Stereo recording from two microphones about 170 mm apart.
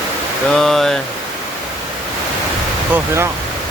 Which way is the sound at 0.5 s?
Centre (ahead or behind).